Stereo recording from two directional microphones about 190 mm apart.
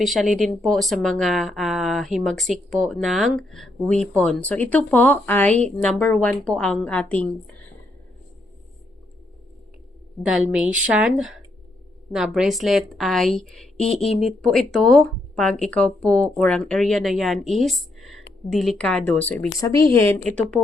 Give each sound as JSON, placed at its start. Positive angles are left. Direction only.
{"t": 0.0, "sound": "speech", "side_deg": 0}
{"t": 10.8, "sound": "speech", "side_deg": -5}